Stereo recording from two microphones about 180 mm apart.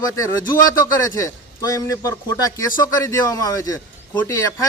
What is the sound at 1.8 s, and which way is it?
Speech, 20° left (ahead or behind).